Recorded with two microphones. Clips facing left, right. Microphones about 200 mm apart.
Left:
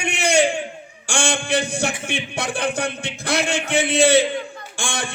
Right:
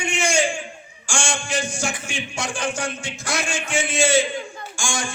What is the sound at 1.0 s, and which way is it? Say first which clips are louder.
A man's voice: left 4 dB; 60° left (ahead or behind).